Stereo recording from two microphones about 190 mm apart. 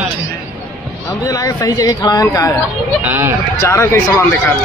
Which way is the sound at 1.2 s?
15° left (ahead or behind).